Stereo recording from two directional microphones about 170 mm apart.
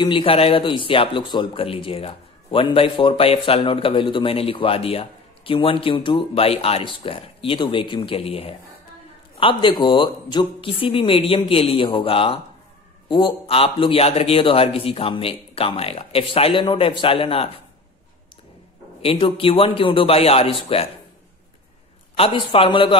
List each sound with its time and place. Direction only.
0.0 s speech: 30° left (ahead or behind)
19.0 s speech: 30° left (ahead or behind)
22.1 s speech: 30° left (ahead or behind)